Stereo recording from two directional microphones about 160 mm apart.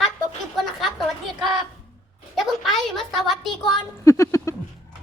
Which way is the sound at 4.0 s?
20° left (ahead or behind).